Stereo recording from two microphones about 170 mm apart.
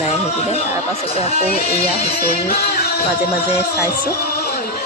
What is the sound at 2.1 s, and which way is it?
Music, 65° left (ahead or behind).